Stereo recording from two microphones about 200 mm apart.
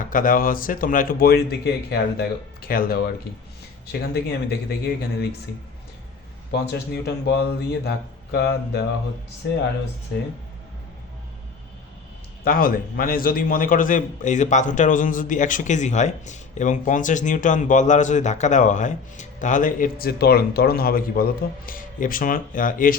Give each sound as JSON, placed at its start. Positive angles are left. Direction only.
{"t": 0.0, "sound": "a man's voice", "side_deg": 40}
{"t": 6.5, "sound": "a man's voice", "side_deg": 55}
{"t": 12.5, "sound": "a man's voice", "side_deg": 45}